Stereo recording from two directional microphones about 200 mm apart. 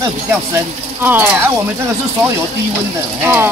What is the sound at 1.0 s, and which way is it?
Speech, 10° right (ahead or behind).